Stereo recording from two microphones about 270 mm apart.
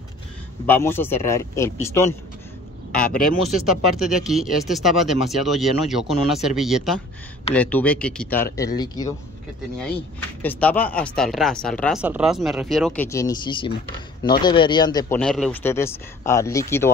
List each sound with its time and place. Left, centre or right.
0.7 s speech: centre
10.4 s speech: centre
15.1 s speech: centre